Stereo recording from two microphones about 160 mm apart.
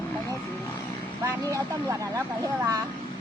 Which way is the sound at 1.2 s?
20° right (ahead or behind).